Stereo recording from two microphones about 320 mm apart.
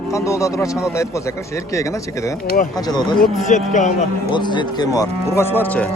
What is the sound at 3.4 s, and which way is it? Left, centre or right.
Speech, left.